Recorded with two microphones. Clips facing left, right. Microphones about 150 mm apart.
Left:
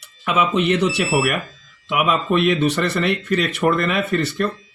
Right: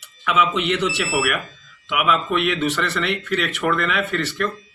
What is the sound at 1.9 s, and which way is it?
Speech, 35° left (ahead or behind).